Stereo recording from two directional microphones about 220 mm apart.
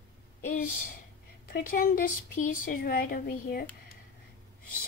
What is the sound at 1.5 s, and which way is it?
A woman's voice, 40° left (ahead or behind).